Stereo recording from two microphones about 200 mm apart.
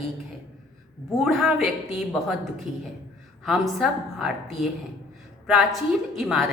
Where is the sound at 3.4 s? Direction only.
Centre (ahead or behind).